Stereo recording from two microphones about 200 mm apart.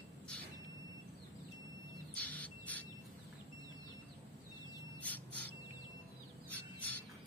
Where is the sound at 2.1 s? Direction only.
10° left (ahead or behind).